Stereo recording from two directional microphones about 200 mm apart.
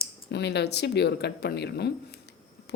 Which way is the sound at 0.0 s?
55° left (ahead or behind).